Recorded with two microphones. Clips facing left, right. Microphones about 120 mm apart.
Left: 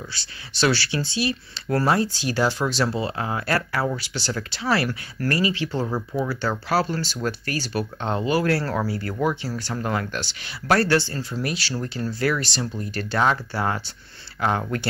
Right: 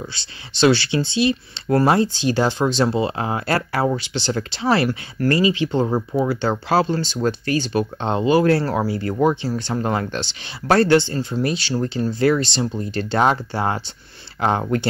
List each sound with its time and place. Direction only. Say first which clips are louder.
0.1 s speech: right 1 dB; 25° right (ahead or behind)